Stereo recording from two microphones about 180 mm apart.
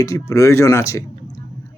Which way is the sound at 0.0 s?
15° left (ahead or behind).